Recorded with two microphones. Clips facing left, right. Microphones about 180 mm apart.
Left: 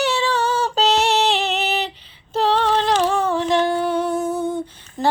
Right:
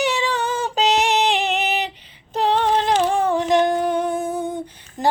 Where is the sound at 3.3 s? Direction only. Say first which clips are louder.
Right 1 dB; 15° right (ahead or behind).